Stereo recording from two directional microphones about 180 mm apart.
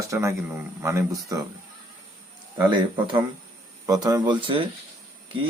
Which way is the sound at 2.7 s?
25° right (ahead or behind).